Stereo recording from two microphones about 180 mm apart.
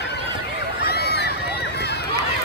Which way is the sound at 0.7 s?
65° left (ahead or behind).